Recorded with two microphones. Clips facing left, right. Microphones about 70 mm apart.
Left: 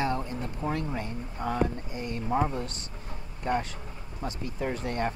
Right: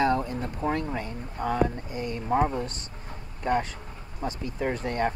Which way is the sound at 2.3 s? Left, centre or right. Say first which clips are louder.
Right 3 dB; right.